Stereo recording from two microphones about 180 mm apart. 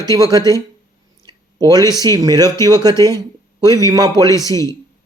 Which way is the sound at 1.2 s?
20° right (ahead or behind).